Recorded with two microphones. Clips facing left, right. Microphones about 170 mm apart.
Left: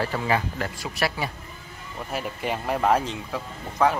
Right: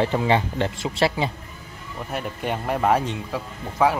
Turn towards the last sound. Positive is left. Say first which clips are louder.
# right 2 dB
turn(degrees=-5)  # may be behind; listen again after turning